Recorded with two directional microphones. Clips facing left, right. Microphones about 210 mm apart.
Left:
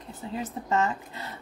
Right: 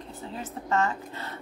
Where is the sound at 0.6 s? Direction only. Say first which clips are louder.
Right 1 dB; 20° left (ahead or behind).